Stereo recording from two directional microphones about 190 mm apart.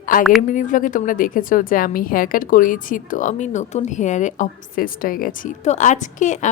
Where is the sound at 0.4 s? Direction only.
45° left (ahead or behind).